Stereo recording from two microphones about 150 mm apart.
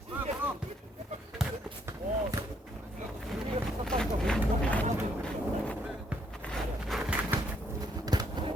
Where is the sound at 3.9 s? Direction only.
5° left (ahead or behind).